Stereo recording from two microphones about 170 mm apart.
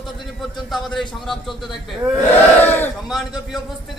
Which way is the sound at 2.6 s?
10° left (ahead or behind).